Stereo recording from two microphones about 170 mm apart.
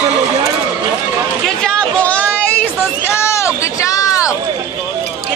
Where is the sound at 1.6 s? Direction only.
5° left (ahead or behind).